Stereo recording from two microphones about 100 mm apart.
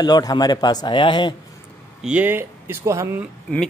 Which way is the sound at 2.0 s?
15° right (ahead or behind).